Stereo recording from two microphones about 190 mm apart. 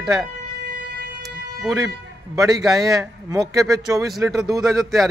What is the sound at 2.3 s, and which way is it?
Speech, 20° right (ahead or behind).